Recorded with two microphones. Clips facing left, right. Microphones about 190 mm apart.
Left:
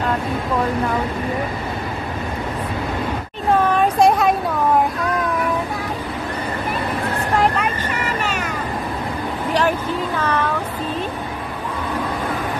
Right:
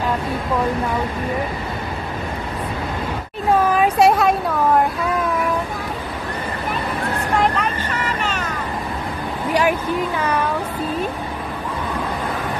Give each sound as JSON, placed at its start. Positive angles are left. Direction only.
{"t": 3.7, "sound": "a sound", "side_deg": -5}
{"t": 7.3, "sound": "vehicle", "side_deg": 5}
{"t": 9.5, "sound": "speech", "side_deg": -10}